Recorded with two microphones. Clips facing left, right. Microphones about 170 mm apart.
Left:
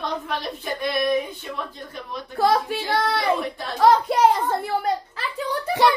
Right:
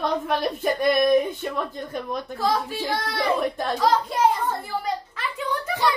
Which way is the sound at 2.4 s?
65° left (ahead or behind).